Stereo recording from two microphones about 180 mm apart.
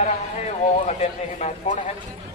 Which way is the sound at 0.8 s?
35° left (ahead or behind).